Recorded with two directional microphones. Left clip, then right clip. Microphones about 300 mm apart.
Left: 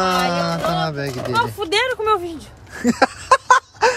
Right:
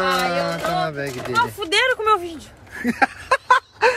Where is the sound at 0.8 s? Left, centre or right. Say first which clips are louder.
Left 2 dB; centre.